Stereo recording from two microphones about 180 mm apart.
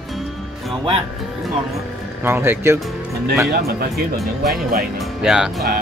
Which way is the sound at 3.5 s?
60° right (ahead or behind).